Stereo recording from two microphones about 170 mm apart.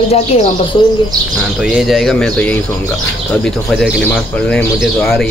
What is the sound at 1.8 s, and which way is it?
Speech, centre (ahead or behind).